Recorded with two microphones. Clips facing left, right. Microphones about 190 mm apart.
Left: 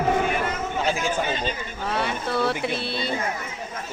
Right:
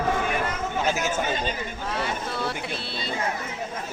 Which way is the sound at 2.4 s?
60° left (ahead or behind).